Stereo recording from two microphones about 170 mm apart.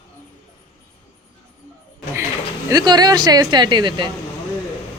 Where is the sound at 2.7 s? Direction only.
25° right (ahead or behind).